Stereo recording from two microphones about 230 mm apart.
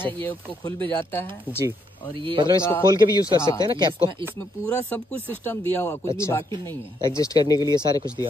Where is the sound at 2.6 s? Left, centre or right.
Centre.